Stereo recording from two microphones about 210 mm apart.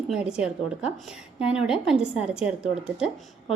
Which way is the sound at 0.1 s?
5° right (ahead or behind).